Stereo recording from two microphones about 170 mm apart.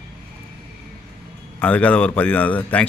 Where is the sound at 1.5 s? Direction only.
5° left (ahead or behind).